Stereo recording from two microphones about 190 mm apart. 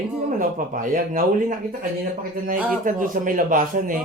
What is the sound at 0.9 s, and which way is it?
A man's voice, 45° right (ahead or behind).